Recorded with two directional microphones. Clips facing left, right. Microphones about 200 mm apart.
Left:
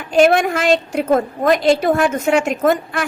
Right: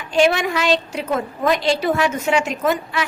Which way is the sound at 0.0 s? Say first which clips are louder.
Left 4 dB; 50° left (ahead or behind).